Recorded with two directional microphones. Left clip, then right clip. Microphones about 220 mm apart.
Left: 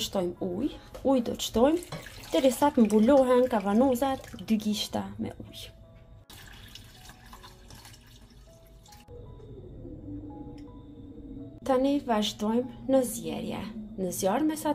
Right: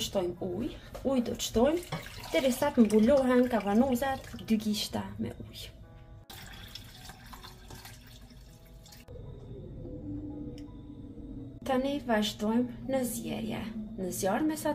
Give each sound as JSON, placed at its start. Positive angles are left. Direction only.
{"t": 0.0, "sound": "a woman's voice", "side_deg": 30}
{"t": 11.6, "sound": "a woman's voice", "side_deg": 30}